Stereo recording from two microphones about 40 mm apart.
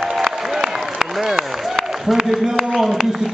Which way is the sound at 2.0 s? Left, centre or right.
Centre.